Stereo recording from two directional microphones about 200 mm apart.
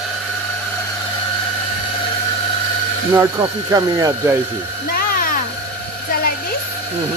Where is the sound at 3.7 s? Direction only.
20° right (ahead or behind).